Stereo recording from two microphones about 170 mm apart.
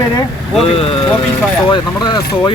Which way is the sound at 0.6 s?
35° left (ahead or behind).